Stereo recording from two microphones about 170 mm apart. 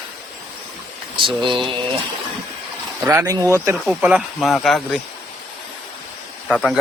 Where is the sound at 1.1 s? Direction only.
30° right (ahead or behind).